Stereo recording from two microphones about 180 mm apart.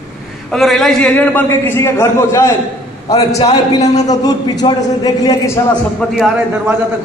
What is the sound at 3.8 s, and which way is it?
Speech, 40° left (ahead or behind).